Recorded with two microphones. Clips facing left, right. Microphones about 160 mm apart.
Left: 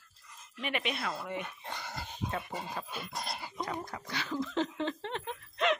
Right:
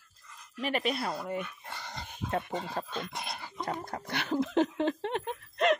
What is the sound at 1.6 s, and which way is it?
Dog, 15° left (ahead or behind).